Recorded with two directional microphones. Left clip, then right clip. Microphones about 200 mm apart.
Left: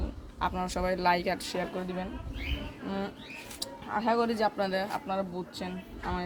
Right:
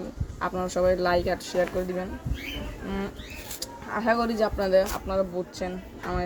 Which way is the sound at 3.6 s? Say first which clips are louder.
Right 2 dB; 20° left (ahead or behind).